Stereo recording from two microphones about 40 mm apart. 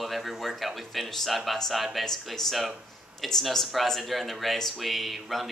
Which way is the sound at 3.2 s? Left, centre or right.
Centre.